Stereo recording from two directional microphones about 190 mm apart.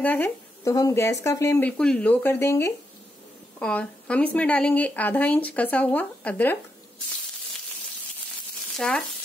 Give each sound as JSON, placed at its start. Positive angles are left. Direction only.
{"t": 0.0, "sound": "speech", "side_deg": 10}
{"t": 8.7, "sound": "speech", "side_deg": 5}